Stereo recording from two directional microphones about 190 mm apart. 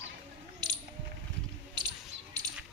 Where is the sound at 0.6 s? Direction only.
20° right (ahead or behind).